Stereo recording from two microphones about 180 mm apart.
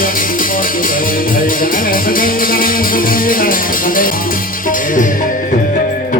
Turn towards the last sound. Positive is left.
turn(degrees=45)  # may be behind; listen again after turning